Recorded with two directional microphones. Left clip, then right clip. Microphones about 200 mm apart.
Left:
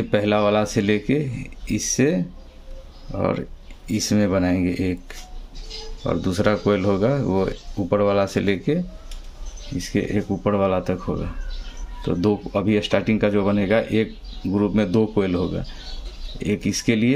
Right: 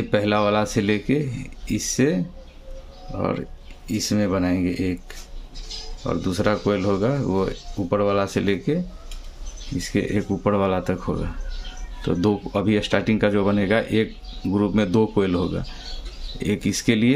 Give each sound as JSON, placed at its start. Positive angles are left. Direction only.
{"t": 0.1, "sound": "speech", "side_deg": 0}
{"t": 6.0, "sound": "speech", "side_deg": 10}
{"t": 9.8, "sound": "speech", "side_deg": -5}